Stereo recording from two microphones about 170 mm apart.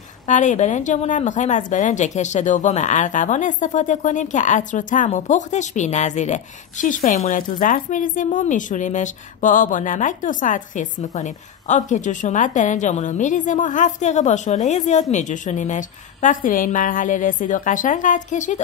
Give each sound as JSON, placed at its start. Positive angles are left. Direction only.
{"t": 0.3, "sound": "speech", "side_deg": 45}